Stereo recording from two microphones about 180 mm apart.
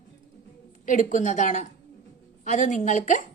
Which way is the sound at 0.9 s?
45° left (ahead or behind).